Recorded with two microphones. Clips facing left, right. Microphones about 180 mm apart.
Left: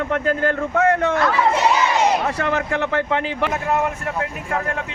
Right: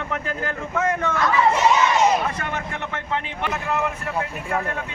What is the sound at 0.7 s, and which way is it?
Speech, 65° left (ahead or behind).